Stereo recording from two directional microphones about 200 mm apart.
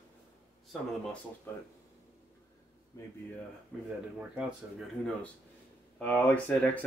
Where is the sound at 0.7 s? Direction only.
Centre (ahead or behind).